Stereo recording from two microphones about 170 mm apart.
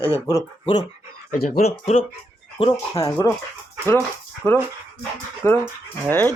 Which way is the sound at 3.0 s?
15° left (ahead or behind).